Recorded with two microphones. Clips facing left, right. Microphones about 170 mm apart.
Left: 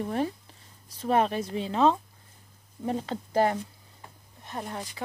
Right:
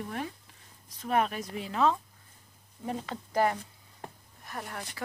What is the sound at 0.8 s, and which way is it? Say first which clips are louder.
Speech: left 4 dB; 30° left (ahead or behind).